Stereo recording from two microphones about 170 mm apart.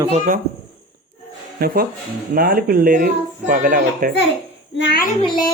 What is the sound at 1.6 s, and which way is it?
Speech, 65° right (ahead or behind).